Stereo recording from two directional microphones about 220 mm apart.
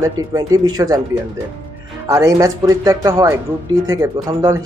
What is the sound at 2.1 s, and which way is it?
Speech, 15° right (ahead or behind).